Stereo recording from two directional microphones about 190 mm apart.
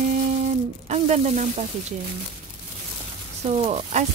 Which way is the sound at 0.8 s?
35° right (ahead or behind).